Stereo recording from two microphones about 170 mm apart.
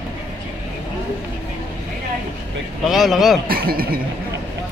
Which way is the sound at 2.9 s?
Centre (ahead or behind).